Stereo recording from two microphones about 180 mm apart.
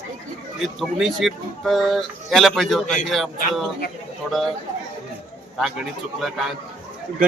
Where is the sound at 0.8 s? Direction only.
Centre (ahead or behind).